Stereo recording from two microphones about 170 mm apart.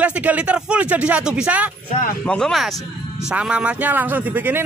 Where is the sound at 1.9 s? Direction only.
50° left (ahead or behind).